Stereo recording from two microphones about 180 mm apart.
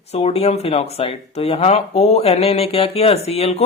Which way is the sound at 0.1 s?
35° left (ahead or behind).